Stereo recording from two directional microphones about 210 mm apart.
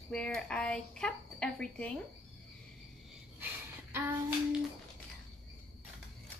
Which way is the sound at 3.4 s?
10° right (ahead or behind).